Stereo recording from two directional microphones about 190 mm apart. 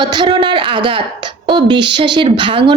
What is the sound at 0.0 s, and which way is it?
A woman's voice, 25° right (ahead or behind).